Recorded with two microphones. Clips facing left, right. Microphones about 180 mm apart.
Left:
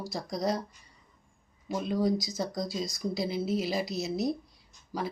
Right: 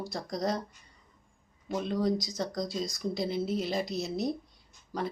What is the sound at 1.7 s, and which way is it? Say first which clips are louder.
Speech: left 1 dB; 5° left (ahead or behind).